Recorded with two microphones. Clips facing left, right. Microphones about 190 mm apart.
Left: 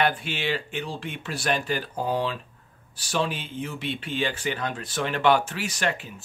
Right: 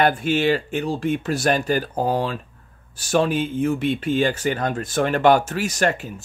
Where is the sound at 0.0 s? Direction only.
45° right (ahead or behind).